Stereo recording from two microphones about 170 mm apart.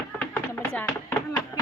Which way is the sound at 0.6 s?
10° left (ahead or behind).